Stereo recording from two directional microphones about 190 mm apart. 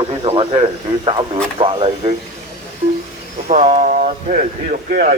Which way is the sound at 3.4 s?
35° right (ahead or behind).